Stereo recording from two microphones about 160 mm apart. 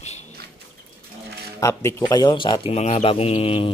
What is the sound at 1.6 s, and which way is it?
Speech, 20° left (ahead or behind).